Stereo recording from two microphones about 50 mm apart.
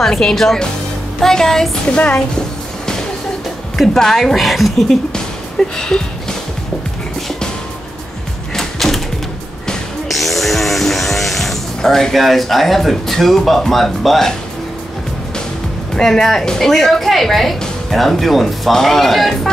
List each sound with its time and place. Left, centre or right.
0.0 s speech: centre
2.0 s speech: left
3.7 s speech: centre
8.5 s a sound: centre
10.0 s music: centre
16.0 s a woman's voice: centre